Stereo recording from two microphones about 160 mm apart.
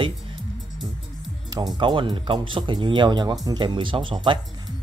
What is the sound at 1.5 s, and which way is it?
Speech, 25° right (ahead or behind).